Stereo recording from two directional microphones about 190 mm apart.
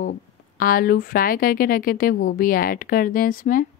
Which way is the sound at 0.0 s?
50° left (ahead or behind).